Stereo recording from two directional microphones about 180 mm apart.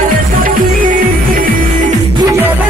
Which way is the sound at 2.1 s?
15° right (ahead or behind).